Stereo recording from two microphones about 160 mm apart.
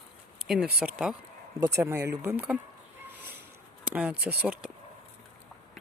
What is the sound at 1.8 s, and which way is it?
Speech, 15° right (ahead or behind).